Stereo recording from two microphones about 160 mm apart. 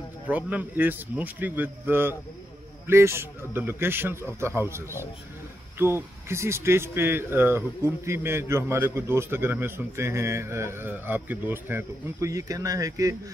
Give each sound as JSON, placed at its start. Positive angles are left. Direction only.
{"t": 0.3, "sound": "speech", "side_deg": -10}